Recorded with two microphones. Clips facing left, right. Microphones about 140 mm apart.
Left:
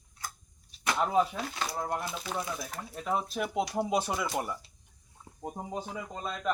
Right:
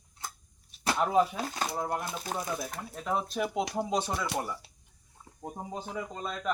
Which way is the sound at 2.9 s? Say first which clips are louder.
Even; 5° left (ahead or behind).